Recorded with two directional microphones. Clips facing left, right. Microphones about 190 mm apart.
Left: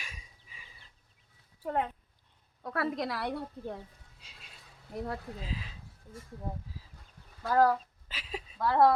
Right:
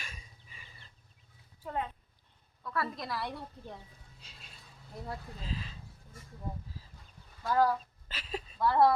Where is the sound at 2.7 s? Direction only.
75° left (ahead or behind).